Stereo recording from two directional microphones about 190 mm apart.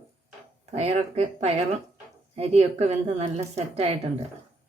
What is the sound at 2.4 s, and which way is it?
A woman's voice, 35° right (ahead or behind).